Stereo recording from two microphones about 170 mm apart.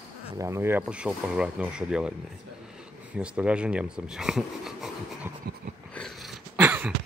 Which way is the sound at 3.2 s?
5° right (ahead or behind).